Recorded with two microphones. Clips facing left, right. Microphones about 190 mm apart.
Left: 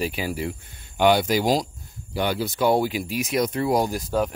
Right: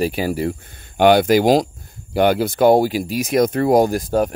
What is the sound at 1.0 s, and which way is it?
Speech, 60° right (ahead or behind).